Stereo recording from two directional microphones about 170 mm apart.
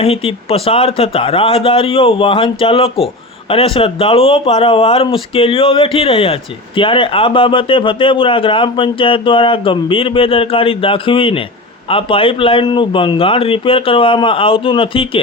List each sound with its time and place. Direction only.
0.0 s speech: 35° left (ahead or behind)